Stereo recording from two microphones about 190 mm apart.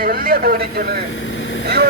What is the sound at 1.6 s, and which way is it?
Speech, 55° right (ahead or behind).